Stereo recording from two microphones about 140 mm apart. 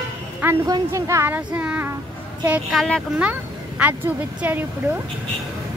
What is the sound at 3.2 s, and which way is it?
Speech, 10° right (ahead or behind).